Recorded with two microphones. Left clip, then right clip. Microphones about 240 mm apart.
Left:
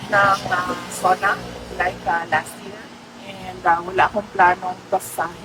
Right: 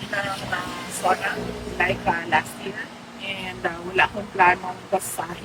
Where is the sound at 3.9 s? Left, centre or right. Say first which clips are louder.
Left 3 dB; centre.